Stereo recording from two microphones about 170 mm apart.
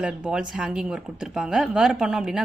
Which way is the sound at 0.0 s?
5° right (ahead or behind).